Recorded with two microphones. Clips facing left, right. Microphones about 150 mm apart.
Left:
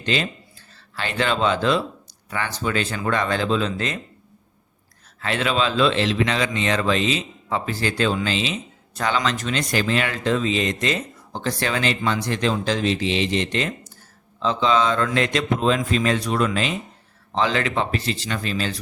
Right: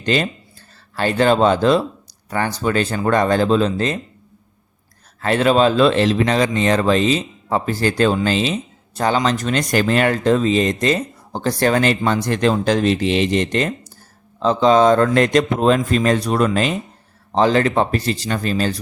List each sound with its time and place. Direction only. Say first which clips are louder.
0.0 s speech: right 5 dB; 45° right (ahead or behind)
5.2 s speech: right 8 dB; 45° right (ahead or behind)